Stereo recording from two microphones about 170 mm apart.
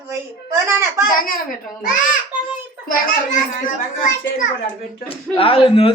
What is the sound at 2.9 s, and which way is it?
A child's voice, 50° left (ahead or behind).